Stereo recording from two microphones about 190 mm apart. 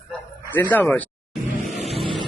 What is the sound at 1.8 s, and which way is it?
Vehicle, 30° right (ahead or behind).